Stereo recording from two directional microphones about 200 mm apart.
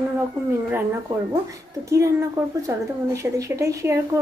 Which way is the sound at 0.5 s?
10° right (ahead or behind).